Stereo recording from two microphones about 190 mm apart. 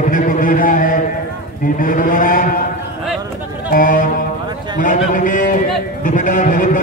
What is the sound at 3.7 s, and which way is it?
A man's voice, 45° left (ahead or behind).